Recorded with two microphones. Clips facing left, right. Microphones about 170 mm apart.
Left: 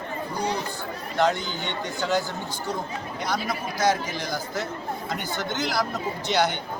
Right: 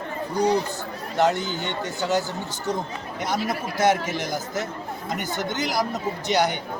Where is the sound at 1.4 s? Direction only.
15° left (ahead or behind).